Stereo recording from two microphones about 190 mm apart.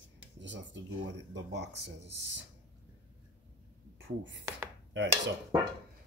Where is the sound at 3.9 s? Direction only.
75° right (ahead or behind).